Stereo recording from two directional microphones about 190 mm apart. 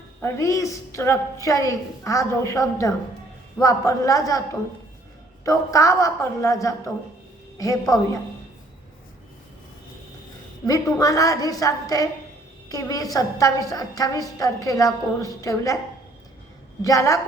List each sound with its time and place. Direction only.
0.2 s a woman's voice: 15° left (ahead or behind)
5.5 s a woman's voice: 15° left (ahead or behind)
10.7 s a woman's voice: 20° left (ahead or behind)
16.8 s a woman's voice: 15° left (ahead or behind)